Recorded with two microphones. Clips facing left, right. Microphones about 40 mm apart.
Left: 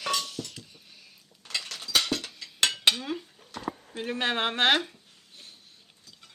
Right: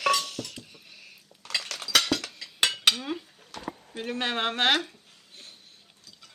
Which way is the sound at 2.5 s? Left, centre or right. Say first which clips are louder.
Right 1 dB; centre.